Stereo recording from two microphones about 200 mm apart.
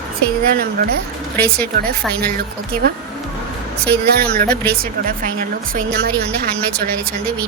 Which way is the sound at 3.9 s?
50° right (ahead or behind).